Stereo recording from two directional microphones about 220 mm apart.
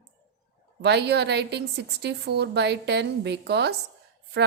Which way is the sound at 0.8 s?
50° right (ahead or behind).